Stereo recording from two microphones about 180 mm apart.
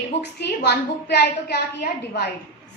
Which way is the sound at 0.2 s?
70° left (ahead or behind).